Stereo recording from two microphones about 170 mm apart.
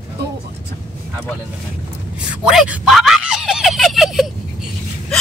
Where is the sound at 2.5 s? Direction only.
5° right (ahead or behind).